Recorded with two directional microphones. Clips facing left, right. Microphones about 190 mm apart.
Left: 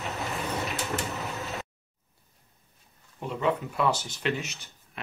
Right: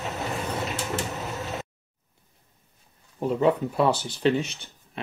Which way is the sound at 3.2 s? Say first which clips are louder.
Right 6 dB; 35° right (ahead or behind).